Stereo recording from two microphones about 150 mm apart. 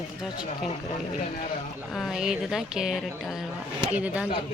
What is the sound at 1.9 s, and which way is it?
Speech, centre (ahead or behind).